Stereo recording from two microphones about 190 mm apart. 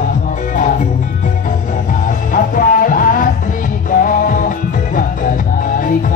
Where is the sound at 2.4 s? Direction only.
45° left (ahead or behind).